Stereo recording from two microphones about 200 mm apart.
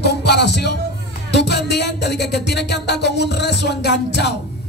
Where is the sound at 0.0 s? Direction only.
55° left (ahead or behind).